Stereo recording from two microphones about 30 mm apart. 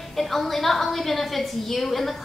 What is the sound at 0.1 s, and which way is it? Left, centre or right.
A woman's voice, centre.